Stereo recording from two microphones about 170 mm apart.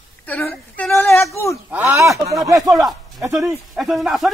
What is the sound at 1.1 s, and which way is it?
Speech, 15° left (ahead or behind).